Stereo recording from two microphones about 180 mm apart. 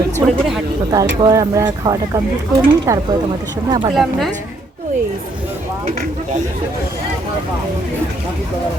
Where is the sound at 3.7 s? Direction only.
30° right (ahead or behind).